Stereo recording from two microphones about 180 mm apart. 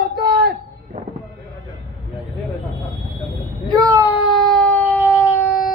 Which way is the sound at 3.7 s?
15° right (ahead or behind).